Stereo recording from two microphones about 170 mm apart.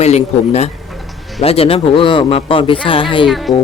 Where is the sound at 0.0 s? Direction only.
40° left (ahead or behind).